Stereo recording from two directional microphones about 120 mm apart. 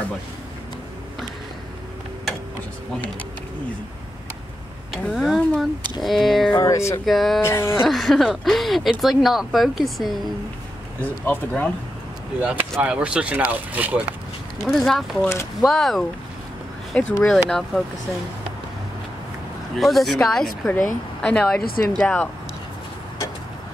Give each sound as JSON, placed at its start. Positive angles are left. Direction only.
{"t": 4.9, "sound": "speech", "side_deg": 0}
{"t": 6.5, "sound": "speech", "side_deg": 30}
{"t": 7.1, "sound": "speech", "side_deg": 0}
{"t": 7.4, "sound": "speech", "side_deg": 20}
{"t": 7.8, "sound": "speech", "side_deg": 0}
{"t": 11.0, "sound": "speech", "side_deg": 15}
{"t": 12.4, "sound": "speech", "side_deg": -10}
{"t": 14.6, "sound": "speech", "side_deg": 0}
{"t": 17.2, "sound": "speech", "side_deg": 0}
{"t": 19.8, "sound": "speech", "side_deg": 0}